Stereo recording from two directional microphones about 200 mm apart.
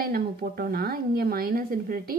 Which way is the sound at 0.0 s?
50° right (ahead or behind).